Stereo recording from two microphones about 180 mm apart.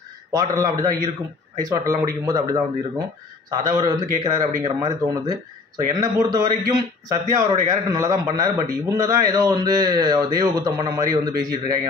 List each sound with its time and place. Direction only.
0.3 s a man's voice: 20° right (ahead or behind)